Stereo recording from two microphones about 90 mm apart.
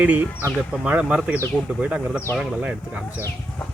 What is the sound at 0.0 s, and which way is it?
Speech, 20° right (ahead or behind).